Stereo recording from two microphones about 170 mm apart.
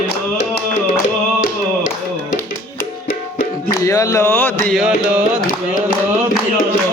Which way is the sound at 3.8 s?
20° left (ahead or behind).